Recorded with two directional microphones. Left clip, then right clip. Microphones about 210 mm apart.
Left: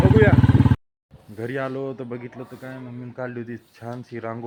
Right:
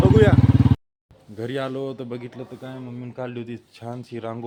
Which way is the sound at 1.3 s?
10° right (ahead or behind).